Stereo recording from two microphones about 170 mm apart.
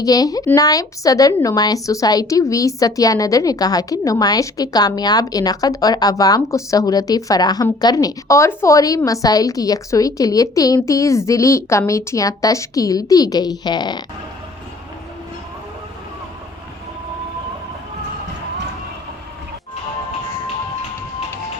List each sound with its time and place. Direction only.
0.0 s speech: 20° left (ahead or behind)